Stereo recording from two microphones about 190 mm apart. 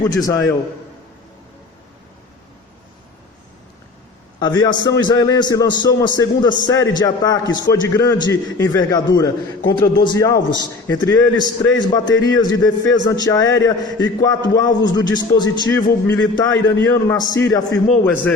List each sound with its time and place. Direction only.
0.0 s a man's voice: 20° left (ahead or behind)
4.4 s a man's voice: 20° left (ahead or behind)